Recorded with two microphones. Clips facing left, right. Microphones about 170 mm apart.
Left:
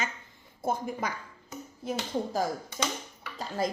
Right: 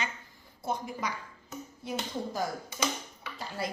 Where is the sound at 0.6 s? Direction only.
50° left (ahead or behind).